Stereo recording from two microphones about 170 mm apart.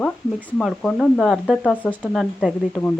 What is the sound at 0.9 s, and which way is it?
Speech, centre (ahead or behind).